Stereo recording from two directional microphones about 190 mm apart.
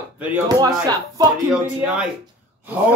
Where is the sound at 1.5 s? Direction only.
5° right (ahead or behind).